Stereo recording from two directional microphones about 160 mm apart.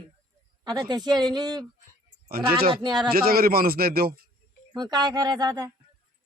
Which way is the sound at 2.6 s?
30° right (ahead or behind).